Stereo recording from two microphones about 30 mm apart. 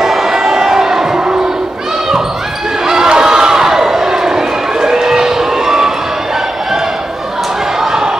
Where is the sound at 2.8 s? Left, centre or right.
Centre.